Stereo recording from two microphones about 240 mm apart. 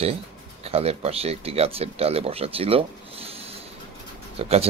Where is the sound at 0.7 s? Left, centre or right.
Right.